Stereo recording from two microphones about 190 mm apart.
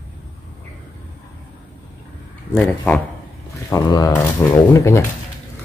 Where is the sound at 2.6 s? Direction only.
5° left (ahead or behind).